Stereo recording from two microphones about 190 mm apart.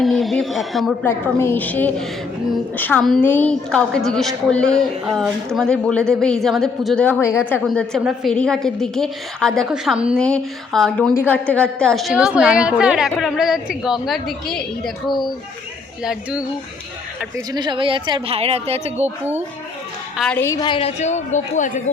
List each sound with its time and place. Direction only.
0.0 s a woman's voice: centre (ahead or behind)
1.0 s a woman's voice: 10° left (ahead or behind)
7.6 s a woman's voice: centre (ahead or behind)
15.0 s a woman's voice: 25° left (ahead or behind)
17.5 s speech: 25° right (ahead or behind)
19.0 s speech: 10° right (ahead or behind)
20.1 s a woman's voice: 5° left (ahead or behind); by 21.7 s 40° left (ahead or behind)